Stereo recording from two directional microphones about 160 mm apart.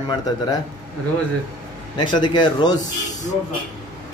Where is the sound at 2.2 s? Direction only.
30° left (ahead or behind).